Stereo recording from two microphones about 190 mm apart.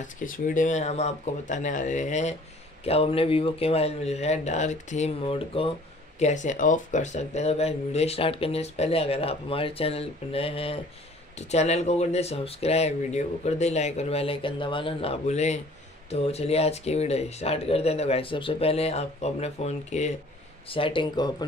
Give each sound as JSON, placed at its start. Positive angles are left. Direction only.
{"t": 0.0, "sound": "speech", "side_deg": 45}